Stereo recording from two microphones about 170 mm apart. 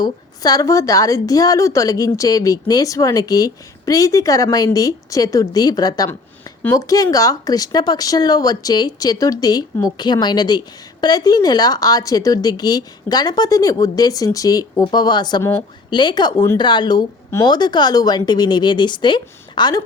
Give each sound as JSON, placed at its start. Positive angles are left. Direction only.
{"t": 0.0, "sound": "a woman's voice", "side_deg": 20}